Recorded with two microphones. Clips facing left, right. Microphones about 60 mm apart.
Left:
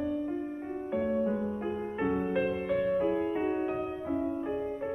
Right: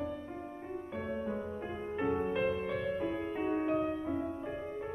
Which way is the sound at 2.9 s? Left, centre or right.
Left.